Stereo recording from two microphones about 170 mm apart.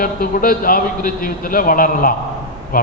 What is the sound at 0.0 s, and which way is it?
A man's voice, 55° left (ahead or behind).